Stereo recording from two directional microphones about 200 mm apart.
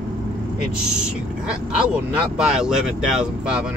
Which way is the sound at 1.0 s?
5° right (ahead or behind).